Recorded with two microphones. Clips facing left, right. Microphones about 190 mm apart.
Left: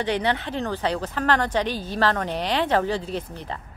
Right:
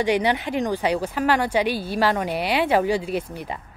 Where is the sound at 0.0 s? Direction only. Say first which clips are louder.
Right 3 dB; 10° right (ahead or behind).